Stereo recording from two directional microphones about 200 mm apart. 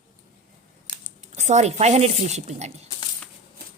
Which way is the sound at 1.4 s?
35° right (ahead or behind).